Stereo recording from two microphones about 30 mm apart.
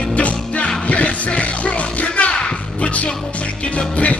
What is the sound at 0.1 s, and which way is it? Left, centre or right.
Music, left.